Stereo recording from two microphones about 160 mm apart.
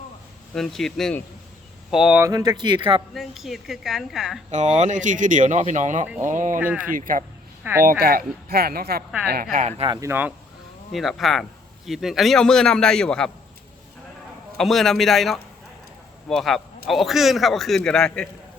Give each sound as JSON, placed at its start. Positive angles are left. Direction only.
{"t": 0.5, "sound": "speech", "side_deg": 0}
{"t": 2.2, "sound": "speech", "side_deg": -20}
{"t": 3.2, "sound": "speech", "side_deg": 0}
{"t": 4.8, "sound": "speech", "side_deg": -50}
{"t": 6.6, "sound": "speech", "side_deg": -10}
{"t": 6.9, "sound": "speech", "side_deg": -60}
{"t": 7.6, "sound": "speech", "side_deg": -15}
{"t": 7.9, "sound": "speech", "side_deg": -65}
{"t": 9.9, "sound": "speech", "side_deg": -15}
{"t": 10.9, "sound": "speech", "side_deg": 0}
{"t": 14.6, "sound": "speech", "side_deg": 0}